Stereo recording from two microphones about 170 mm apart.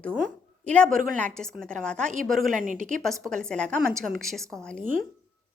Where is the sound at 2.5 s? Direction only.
50° right (ahead or behind).